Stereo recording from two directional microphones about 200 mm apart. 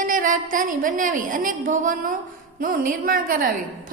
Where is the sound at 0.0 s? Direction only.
40° right (ahead or behind).